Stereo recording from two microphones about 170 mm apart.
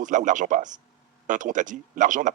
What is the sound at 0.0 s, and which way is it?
Speech, 50° right (ahead or behind).